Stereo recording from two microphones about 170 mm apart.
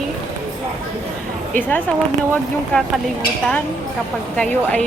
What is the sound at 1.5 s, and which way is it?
Speech, 10° left (ahead or behind).